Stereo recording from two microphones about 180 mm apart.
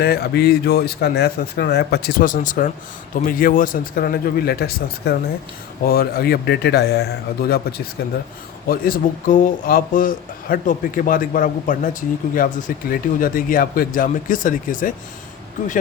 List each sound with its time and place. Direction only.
0.0 s a man's voice: 60° left (ahead or behind)